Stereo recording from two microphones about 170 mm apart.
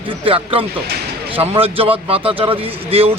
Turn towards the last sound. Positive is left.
turn(degrees=-35)  # may be behind; listen again after turning